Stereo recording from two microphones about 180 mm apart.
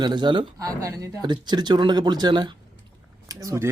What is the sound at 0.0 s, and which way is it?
Speech, 25° right (ahead or behind).